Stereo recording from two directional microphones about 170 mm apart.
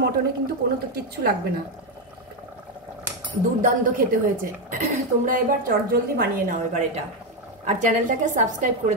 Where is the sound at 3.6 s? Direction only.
50° right (ahead or behind).